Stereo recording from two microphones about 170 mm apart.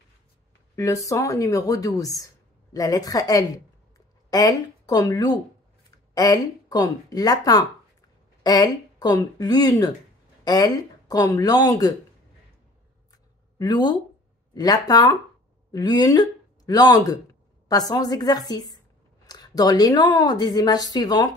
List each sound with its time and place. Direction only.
0.7 s speech: 20° left (ahead or behind)
13.6 s speech: 25° left (ahead or behind)